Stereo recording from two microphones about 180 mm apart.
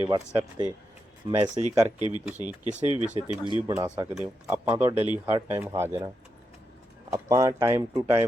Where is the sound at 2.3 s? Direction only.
40° right (ahead or behind).